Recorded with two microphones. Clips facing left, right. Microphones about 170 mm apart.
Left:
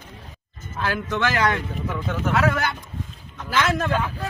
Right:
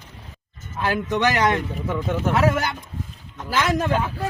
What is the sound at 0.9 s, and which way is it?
Speech, 15° right (ahead or behind).